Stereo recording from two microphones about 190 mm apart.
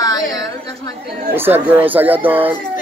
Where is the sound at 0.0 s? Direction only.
20° left (ahead or behind).